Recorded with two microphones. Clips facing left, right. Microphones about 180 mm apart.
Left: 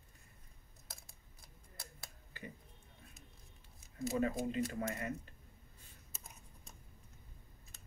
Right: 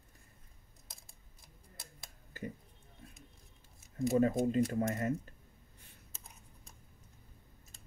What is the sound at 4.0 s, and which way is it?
Speech, 45° right (ahead or behind).